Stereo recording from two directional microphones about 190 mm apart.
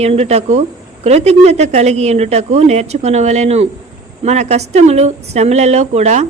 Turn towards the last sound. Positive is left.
turn(degrees=-35)  # may be behind; listen again after turning